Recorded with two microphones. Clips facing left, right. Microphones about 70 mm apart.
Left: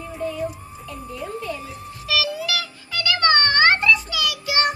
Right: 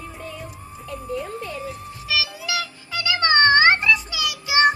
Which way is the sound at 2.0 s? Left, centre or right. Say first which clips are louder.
Left 3 dB; centre.